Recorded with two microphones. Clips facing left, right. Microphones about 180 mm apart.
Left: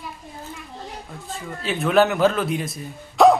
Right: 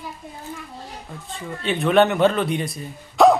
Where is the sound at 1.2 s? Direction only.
Centre (ahead or behind).